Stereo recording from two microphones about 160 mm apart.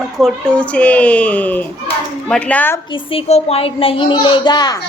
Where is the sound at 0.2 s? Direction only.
5° left (ahead or behind).